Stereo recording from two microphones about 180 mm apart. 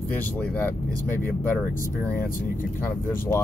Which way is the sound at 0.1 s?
10° left (ahead or behind).